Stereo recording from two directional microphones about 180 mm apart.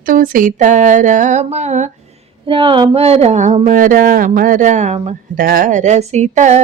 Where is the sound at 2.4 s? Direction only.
30° right (ahead or behind).